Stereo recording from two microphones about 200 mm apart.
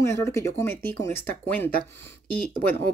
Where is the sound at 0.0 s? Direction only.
15° left (ahead or behind).